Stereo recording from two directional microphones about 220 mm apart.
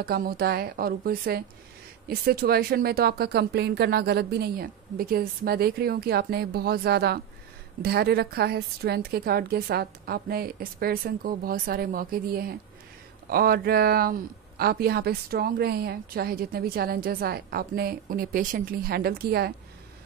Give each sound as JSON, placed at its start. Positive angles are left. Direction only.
{"t": 0.0, "sound": "speech", "side_deg": -45}